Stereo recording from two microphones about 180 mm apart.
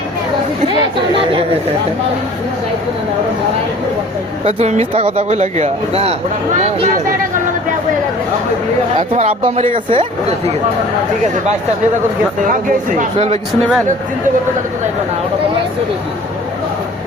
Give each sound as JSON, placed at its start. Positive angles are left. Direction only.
{"t": 4.4, "sound": "speech", "side_deg": -40}
{"t": 9.1, "sound": "speech", "side_deg": -35}
{"t": 12.5, "sound": "speech", "side_deg": -50}
{"t": 13.1, "sound": "speech", "side_deg": -35}